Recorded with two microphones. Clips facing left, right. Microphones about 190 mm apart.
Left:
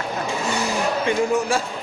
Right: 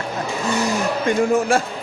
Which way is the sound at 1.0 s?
55° right (ahead or behind).